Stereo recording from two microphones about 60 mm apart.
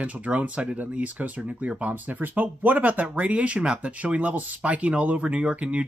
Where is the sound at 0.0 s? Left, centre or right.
Right.